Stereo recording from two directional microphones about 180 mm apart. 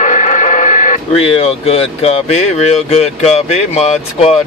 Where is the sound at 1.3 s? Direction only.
35° left (ahead or behind).